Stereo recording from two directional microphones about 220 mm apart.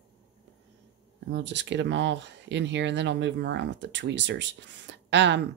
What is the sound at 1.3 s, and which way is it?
Speech, 55° right (ahead or behind).